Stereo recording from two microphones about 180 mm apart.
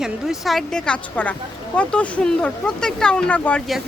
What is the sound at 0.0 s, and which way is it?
Speech, centre (ahead or behind).